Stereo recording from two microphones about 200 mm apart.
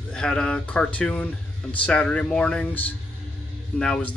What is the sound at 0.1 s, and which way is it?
A man's voice, 5° left (ahead or behind).